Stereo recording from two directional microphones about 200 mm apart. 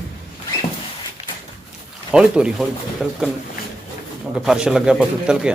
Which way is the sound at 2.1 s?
5° right (ahead or behind).